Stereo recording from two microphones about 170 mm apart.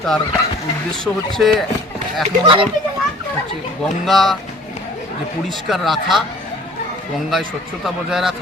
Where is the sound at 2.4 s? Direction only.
30° right (ahead or behind).